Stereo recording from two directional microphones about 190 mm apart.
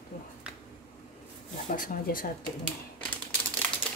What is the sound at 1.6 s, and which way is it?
Speech, 45° left (ahead or behind).